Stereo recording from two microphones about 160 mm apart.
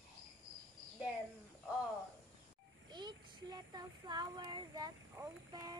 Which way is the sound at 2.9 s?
25° right (ahead or behind).